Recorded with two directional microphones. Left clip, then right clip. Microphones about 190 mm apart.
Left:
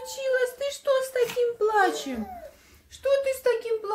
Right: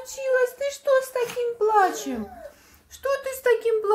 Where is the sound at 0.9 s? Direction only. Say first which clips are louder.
Right 2 dB; centre (ahead or behind).